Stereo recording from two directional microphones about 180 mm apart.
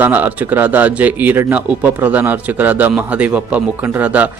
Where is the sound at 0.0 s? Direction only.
10° right (ahead or behind).